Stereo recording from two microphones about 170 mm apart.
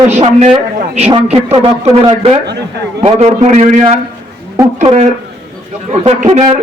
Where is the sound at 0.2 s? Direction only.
40° right (ahead or behind).